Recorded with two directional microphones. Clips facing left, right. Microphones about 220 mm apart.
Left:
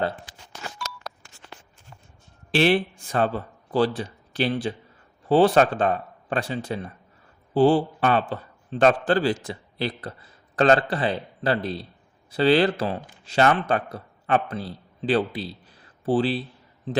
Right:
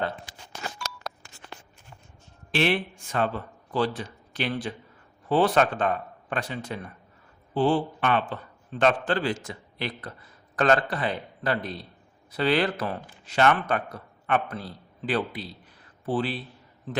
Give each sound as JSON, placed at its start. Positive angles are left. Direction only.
{"t": 2.5, "sound": "a man's voice", "side_deg": 35}